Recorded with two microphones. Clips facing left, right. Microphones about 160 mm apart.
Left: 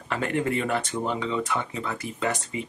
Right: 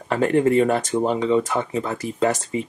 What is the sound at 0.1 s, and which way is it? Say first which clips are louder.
Speech: right 9 dB; 35° right (ahead or behind).